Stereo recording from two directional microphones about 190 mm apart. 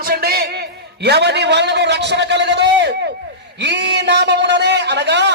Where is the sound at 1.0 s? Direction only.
60° right (ahead or behind).